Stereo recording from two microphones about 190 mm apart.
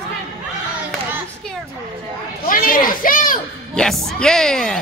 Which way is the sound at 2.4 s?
45° left (ahead or behind).